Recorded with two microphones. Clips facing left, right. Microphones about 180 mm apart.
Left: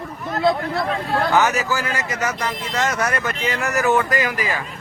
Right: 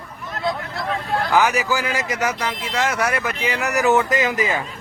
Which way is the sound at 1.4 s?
15° right (ahead or behind).